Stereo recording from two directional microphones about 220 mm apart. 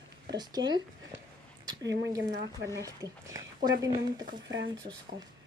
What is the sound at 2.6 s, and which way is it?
Speech, 15° right (ahead or behind).